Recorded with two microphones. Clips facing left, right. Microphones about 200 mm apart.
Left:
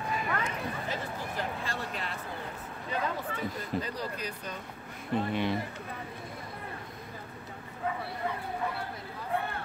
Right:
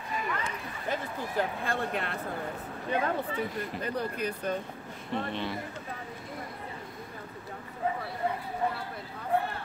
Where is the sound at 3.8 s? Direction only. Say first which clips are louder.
Right 5 dB; 55° right (ahead or behind).